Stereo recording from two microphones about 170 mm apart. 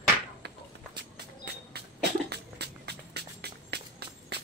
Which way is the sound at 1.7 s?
75° right (ahead or behind).